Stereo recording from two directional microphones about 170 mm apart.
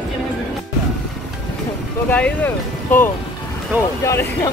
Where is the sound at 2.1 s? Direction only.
10° left (ahead or behind).